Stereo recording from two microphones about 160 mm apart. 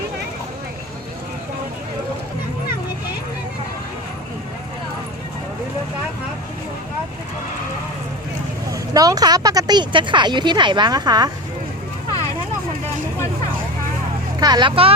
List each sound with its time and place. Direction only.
8.9 s speech: 20° right (ahead or behind)
14.4 s speech: 25° right (ahead or behind)